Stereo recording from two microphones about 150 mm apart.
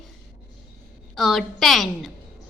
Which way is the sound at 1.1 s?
Centre (ahead or behind).